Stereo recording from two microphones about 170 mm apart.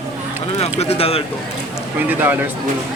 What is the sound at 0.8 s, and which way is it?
Speech, 35° left (ahead or behind).